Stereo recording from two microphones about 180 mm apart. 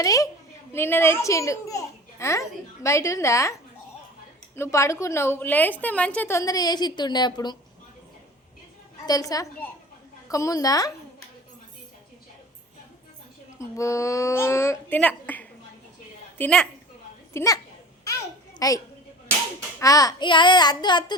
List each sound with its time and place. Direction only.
0.0 s a child's voice: 20° left (ahead or behind)
9.0 s a child's voice: 20° left (ahead or behind)
13.6 s a woman's voice: 15° left (ahead or behind)
17.3 s a child's voice: 20° left (ahead or behind)
18.6 s a child's voice: 20° left (ahead or behind)
19.8 s a child's voice: 20° left (ahead or behind)